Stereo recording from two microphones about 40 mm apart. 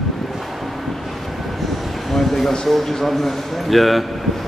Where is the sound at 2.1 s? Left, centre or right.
Centre.